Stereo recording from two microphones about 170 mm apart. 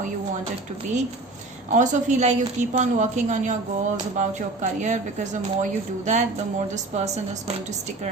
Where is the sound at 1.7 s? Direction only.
45° right (ahead or behind).